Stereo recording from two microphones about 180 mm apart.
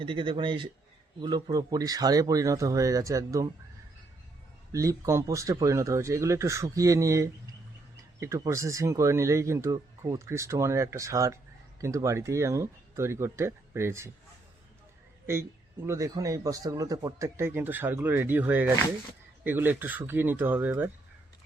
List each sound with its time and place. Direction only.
0.0 s speech: 25° right (ahead or behind)
4.7 s speech: 15° right (ahead or behind)
15.3 s speech: 15° right (ahead or behind)